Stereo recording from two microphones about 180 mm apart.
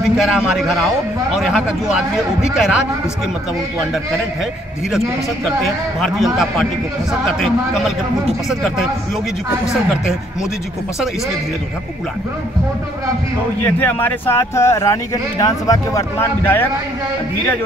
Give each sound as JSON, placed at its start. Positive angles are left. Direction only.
{"t": 0.2, "sound": "a man's voice", "side_deg": -5}
{"t": 5.9, "sound": "a man's voice", "side_deg": 0}
{"t": 13.7, "sound": "speech", "side_deg": 10}